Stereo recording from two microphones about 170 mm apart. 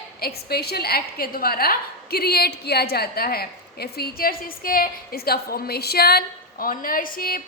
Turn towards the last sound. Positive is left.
turn(degrees=55)  # may be behind; listen again after turning